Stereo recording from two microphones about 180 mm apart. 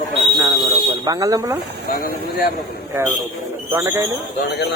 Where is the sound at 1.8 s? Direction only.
60° left (ahead or behind).